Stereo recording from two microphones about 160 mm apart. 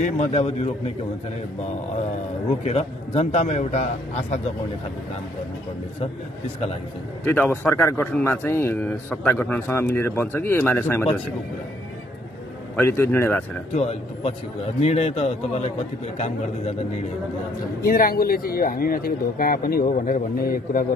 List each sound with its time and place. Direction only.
0.0 s a man's voice: 45° left (ahead or behind)
2.6 s a man's voice: 45° left (ahead or behind)
7.2 s a man's voice: 10° left (ahead or behind)
12.7 s a man's voice: 15° left (ahead or behind)
13.7 s a man's voice: 40° left (ahead or behind)
17.8 s speech: 70° left (ahead or behind)